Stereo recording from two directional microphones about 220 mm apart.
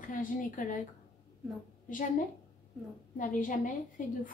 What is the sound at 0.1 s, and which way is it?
Speech, 35° left (ahead or behind).